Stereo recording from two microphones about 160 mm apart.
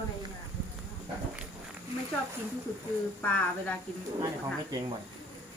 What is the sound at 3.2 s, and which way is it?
Speech, 10° left (ahead or behind).